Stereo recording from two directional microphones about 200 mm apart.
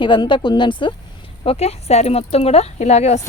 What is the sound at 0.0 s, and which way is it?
Speech, 25° left (ahead or behind).